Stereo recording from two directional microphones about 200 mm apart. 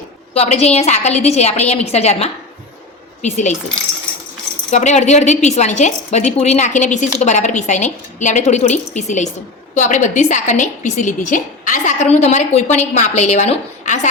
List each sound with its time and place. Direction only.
0.3 s a woman's voice: 35° left (ahead or behind)
4.7 s a woman's voice: 35° left (ahead or behind)